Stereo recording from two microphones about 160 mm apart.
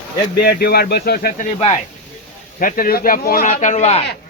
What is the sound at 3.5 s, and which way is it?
Speech, 45° left (ahead or behind).